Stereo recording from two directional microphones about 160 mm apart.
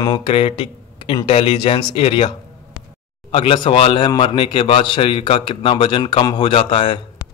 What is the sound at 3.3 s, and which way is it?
A man's voice, 35° left (ahead or behind).